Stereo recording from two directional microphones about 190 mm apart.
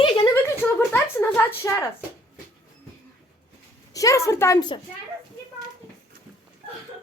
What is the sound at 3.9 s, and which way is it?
Speech, 15° left (ahead or behind).